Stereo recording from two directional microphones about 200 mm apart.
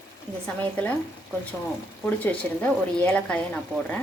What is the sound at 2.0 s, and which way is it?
A woman's voice, 5° left (ahead or behind).